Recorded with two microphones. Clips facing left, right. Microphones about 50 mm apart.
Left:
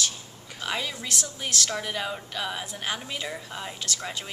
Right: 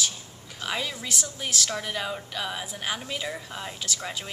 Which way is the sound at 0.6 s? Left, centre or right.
Centre.